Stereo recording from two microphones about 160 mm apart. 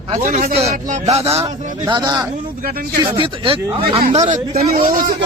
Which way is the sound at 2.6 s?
70° right (ahead or behind).